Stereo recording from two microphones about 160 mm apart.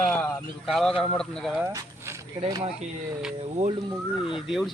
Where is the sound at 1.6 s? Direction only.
20° right (ahead or behind).